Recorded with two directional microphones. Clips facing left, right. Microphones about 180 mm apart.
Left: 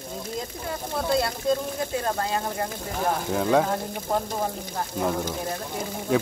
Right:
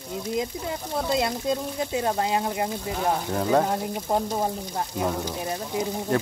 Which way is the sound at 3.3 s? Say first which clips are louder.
Left 1 dB; centre (ahead or behind).